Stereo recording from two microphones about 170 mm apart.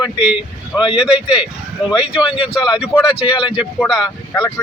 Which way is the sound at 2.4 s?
30° left (ahead or behind).